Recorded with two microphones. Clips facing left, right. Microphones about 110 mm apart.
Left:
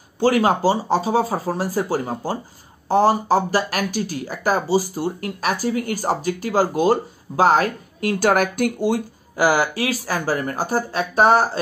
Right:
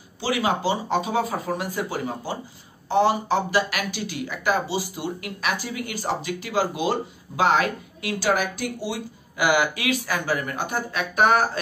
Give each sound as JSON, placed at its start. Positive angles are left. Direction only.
{"t": 0.2, "sound": "speech", "side_deg": 45}